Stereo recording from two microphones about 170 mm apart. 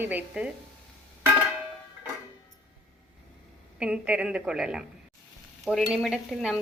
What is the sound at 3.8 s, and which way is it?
Speech, 5° right (ahead or behind).